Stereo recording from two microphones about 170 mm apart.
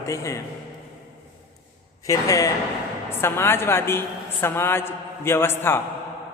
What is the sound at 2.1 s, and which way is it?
A man's voice, 20° left (ahead or behind).